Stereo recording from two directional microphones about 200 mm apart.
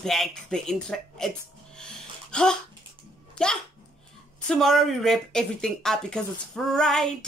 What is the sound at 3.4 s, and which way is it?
Speech, 5° left (ahead or behind).